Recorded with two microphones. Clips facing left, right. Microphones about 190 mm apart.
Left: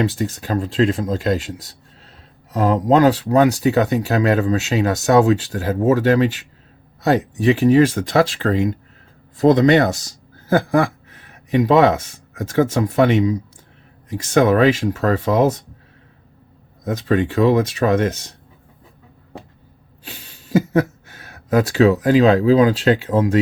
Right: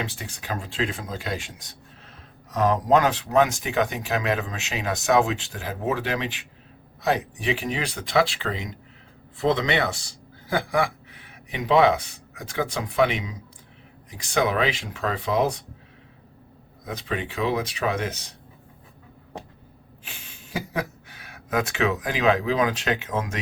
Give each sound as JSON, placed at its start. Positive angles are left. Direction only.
{"t": 0.0, "sound": "speech", "side_deg": 40}
{"t": 2.6, "sound": "speech", "side_deg": 25}
{"t": 16.8, "sound": "speech", "side_deg": 45}
{"t": 20.5, "sound": "speech", "side_deg": 45}